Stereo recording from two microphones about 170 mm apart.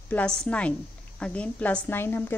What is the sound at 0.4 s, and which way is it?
A woman's voice, 5° left (ahead or behind).